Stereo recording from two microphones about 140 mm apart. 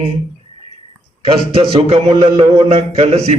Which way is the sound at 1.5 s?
45° right (ahead or behind).